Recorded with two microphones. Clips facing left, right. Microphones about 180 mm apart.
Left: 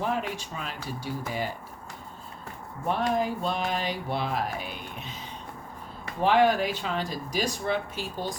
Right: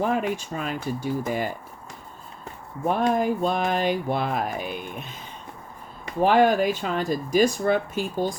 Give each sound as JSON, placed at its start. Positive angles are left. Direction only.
{"t": 0.0, "sound": "speech", "side_deg": -50}
{"t": 2.9, "sound": "speech", "side_deg": -50}
{"t": 6.2, "sound": "speech", "side_deg": -45}